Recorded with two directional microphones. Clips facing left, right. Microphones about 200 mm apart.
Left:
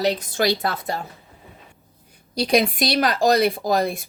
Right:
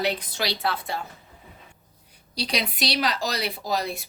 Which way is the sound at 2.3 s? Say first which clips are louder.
Left 10 dB; 50° left (ahead or behind).